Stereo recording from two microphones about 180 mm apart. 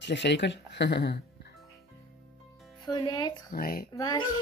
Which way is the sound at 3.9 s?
20° left (ahead or behind).